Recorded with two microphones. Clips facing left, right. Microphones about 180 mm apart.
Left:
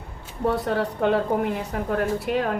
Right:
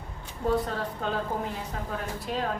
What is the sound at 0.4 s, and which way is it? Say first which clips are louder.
A woman's voice: left 4 dB; 70° left (ahead or behind).